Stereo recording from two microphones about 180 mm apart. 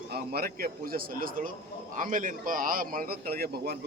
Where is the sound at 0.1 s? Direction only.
60° right (ahead or behind).